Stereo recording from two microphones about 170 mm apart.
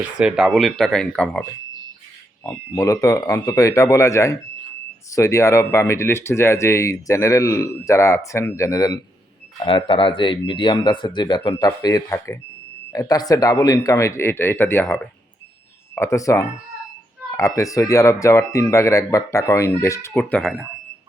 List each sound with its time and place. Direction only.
0.0 s speech: 5° right (ahead or behind); by 9.0 s 20° left (ahead or behind)
9.6 s speech: 35° left (ahead or behind); by 20.5 s 10° left (ahead or behind)